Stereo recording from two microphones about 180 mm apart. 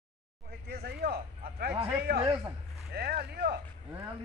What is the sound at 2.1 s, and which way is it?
Speech, 30° right (ahead or behind).